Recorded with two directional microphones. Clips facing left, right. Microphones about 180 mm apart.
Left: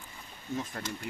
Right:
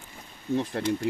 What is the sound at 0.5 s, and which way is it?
Speech, 30° right (ahead or behind).